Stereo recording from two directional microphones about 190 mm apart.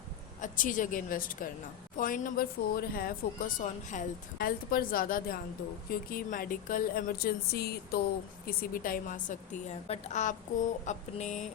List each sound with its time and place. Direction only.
0.4 s speech: 45° left (ahead or behind)
9.8 s chicken: 35° left (ahead or behind)